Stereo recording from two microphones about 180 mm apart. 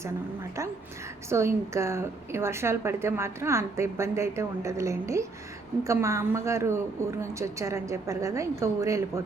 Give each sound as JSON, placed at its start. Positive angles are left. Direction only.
{"t": 1.3, "sound": "a woman's voice", "side_deg": -15}